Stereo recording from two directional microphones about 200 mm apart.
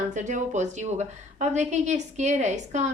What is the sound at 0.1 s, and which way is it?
A woman's voice, 40° right (ahead or behind).